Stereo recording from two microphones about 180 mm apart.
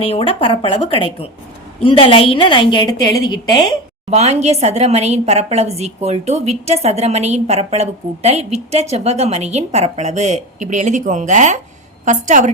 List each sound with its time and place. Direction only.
0.0 s a woman's voice: 30° left (ahead or behind)
4.1 s a woman's voice: 35° right (ahead or behind)